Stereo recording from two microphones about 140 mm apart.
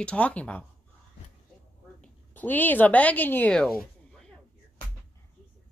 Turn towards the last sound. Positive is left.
turn(degrees=5)  # may be behind; listen again after turning